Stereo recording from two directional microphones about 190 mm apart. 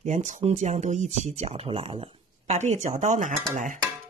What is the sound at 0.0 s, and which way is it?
Speech, 40° right (ahead or behind).